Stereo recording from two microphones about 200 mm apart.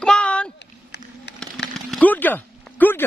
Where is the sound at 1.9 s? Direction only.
5° left (ahead or behind).